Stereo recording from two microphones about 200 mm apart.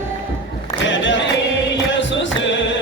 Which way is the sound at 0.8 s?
65° left (ahead or behind).